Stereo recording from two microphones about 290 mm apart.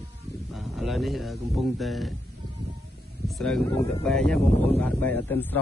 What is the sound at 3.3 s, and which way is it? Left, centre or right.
Speech, centre.